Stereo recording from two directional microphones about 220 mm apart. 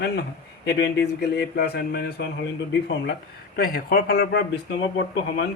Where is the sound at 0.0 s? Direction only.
50° left (ahead or behind).